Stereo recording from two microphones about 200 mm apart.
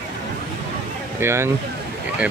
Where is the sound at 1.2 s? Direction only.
15° right (ahead or behind).